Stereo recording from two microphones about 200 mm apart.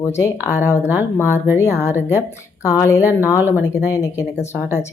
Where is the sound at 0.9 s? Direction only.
10° right (ahead or behind).